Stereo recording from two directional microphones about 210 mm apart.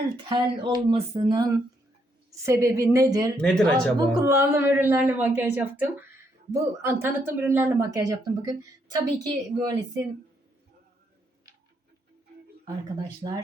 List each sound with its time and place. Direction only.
0.3 s speech: 25° right (ahead or behind)
3.4 s speech: 5° left (ahead or behind)
4.2 s speech: 15° right (ahead or behind)
12.6 s speech: 20° right (ahead or behind)